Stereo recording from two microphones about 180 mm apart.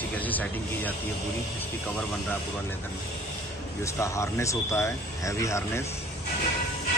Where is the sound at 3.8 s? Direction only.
15° left (ahead or behind).